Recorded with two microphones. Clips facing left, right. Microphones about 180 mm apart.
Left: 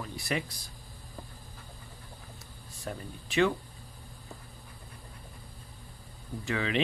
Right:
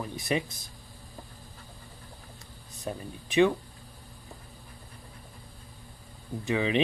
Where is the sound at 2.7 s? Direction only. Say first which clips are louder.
Right 3 dB; 20° right (ahead or behind).